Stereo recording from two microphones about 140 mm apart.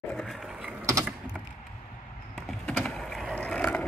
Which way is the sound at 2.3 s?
Centre (ahead or behind).